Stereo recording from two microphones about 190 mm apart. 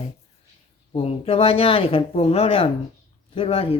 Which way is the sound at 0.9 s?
30° left (ahead or behind).